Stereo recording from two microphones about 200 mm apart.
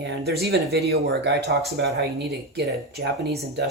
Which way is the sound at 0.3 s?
50° right (ahead or behind).